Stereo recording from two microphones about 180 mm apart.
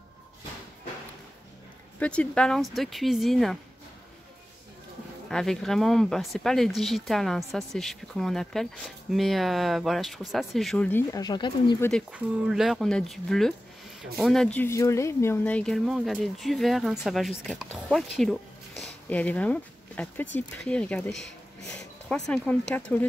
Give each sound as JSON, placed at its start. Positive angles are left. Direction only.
{"t": 2.0, "sound": "speech", "side_deg": 5}
{"t": 5.3, "sound": "speech", "side_deg": 0}
{"t": 11.2, "sound": "speech", "side_deg": 25}
{"t": 12.1, "sound": "speech", "side_deg": -5}
{"t": 22.3, "sound": "speech", "side_deg": 5}